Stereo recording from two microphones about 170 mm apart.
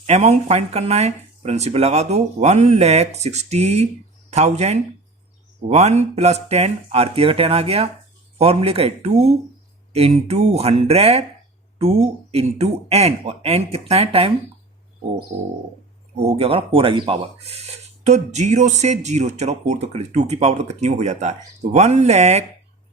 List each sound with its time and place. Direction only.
0.0 s speech: 40° right (ahead or behind)
15.3 s bird: 55° right (ahead or behind)
16.1 s speech: 35° right (ahead or behind)